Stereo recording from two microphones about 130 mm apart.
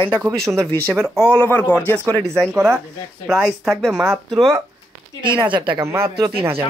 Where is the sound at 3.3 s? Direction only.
Centre (ahead or behind).